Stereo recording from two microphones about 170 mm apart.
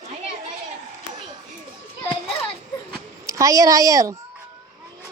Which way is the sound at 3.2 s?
20° right (ahead or behind).